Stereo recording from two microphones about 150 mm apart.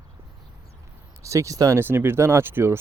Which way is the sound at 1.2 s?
20° right (ahead or behind).